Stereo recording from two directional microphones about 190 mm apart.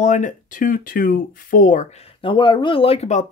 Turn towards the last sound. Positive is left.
turn(degrees=40)  # may be behind; listen again after turning